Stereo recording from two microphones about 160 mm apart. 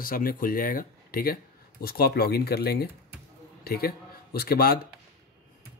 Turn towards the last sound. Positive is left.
turn(degrees=70)  # may be behind; listen again after turning